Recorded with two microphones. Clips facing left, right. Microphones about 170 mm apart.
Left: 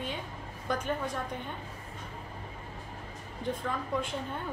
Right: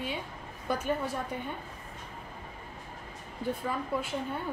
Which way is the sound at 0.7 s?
10° right (ahead or behind).